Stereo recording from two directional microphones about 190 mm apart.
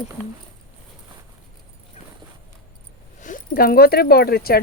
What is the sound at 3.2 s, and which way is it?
Speech, 45° left (ahead or behind).